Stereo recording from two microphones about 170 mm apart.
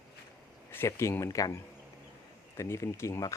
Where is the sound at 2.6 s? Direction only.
15° left (ahead or behind).